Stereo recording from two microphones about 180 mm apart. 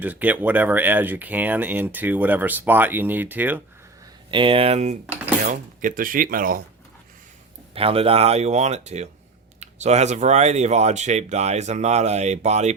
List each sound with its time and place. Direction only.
0.0 s speech: 10° right (ahead or behind)
4.3 s speech: 30° right (ahead or behind)
5.5 s speech: 50° right (ahead or behind)
7.7 s speech: 30° right (ahead or behind)